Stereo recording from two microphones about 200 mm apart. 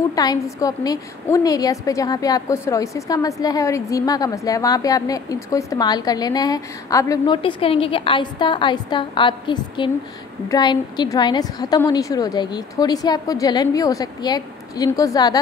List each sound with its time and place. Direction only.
0.1 s a woman's voice: 20° left (ahead or behind)